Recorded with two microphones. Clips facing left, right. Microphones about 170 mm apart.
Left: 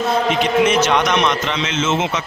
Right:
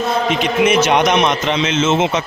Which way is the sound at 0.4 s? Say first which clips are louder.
Right 2 dB; 15° right (ahead or behind).